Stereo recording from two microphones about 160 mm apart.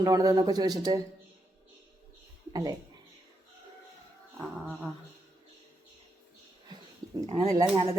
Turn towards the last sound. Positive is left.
turn(degrees=-35)  # may be behind; listen again after turning